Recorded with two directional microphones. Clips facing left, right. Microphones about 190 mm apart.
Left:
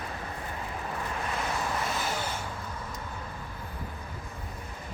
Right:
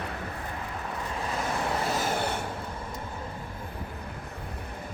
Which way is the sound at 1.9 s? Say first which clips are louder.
Right 4 dB; 40° right (ahead or behind).